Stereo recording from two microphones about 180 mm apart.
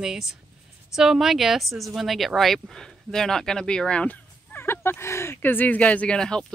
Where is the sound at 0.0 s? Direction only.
5° right (ahead or behind).